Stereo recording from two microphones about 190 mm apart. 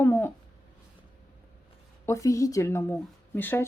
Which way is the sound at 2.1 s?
15° left (ahead or behind).